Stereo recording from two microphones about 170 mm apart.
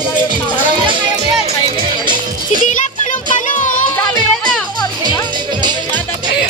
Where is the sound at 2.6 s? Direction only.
50° left (ahead or behind).